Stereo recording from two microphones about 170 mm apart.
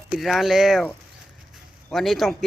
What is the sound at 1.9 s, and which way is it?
Speech, centre (ahead or behind).